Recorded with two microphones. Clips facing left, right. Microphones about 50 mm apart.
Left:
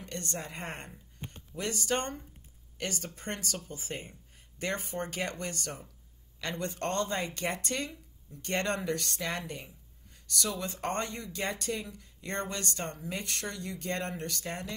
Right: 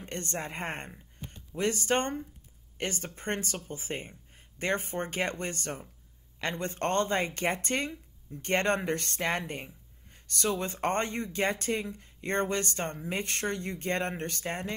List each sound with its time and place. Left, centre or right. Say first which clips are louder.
0.0 s speech: right 3 dB; right